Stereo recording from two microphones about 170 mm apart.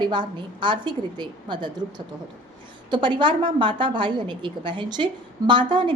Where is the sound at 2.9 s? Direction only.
30° right (ahead or behind).